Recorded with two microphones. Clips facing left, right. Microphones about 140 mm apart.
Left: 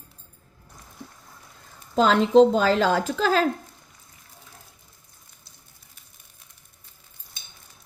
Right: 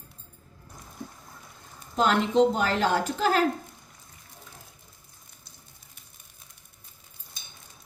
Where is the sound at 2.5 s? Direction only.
90° left.